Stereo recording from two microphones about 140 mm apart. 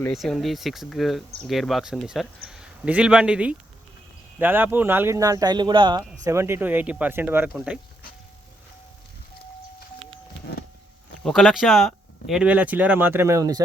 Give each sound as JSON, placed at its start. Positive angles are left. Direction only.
{"t": 0.1, "sound": "speech", "side_deg": 0}
{"t": 6.2, "sound": "speech", "side_deg": -20}
{"t": 11.2, "sound": "speech", "side_deg": 5}